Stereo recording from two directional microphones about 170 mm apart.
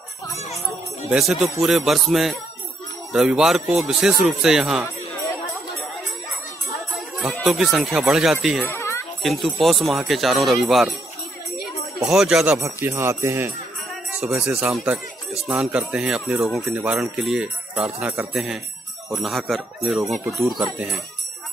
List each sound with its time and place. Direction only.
0.3 s speech: 40° left (ahead or behind)
1.1 s speech: centre (ahead or behind)
7.4 s speech: 5° right (ahead or behind)
8.6 s a sound: 15° left (ahead or behind)
9.2 s speech: centre (ahead or behind)
12.0 s speech: centre (ahead or behind)
12.5 s speech: 15° right (ahead or behind); by 20.0 s centre (ahead or behind)